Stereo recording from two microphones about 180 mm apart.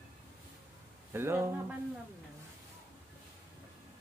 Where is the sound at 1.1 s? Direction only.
15° right (ahead or behind).